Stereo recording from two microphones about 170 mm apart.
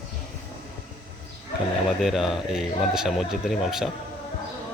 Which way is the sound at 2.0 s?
Centre (ahead or behind).